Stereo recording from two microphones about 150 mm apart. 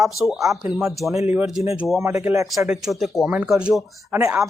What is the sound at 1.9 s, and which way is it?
Speech, 20° right (ahead or behind).